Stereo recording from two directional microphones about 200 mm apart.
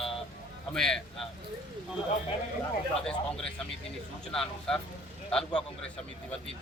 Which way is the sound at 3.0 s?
5° left (ahead or behind).